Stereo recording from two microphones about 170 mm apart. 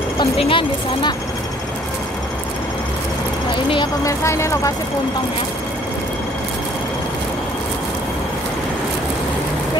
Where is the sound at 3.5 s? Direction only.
30° left (ahead or behind).